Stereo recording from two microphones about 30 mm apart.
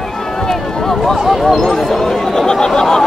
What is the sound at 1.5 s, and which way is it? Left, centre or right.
Speech, centre.